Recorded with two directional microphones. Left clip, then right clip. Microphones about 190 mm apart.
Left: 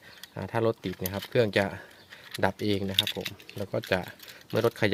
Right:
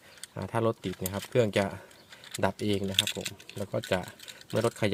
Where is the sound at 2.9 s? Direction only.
30° left (ahead or behind).